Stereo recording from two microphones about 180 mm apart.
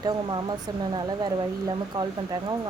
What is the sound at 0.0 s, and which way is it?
Speech, 25° right (ahead or behind).